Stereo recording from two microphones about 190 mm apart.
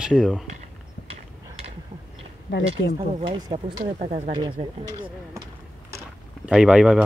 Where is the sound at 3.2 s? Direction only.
30° right (ahead or behind).